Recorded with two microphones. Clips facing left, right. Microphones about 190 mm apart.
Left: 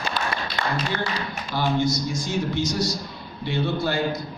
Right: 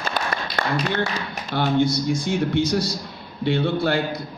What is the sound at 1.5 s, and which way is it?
Speech, 60° right (ahead or behind).